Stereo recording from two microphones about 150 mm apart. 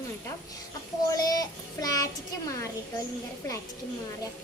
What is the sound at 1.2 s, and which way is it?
Speech, 25° left (ahead or behind).